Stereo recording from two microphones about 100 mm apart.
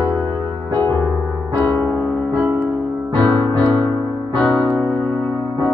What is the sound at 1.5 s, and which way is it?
Music, 20° left (ahead or behind).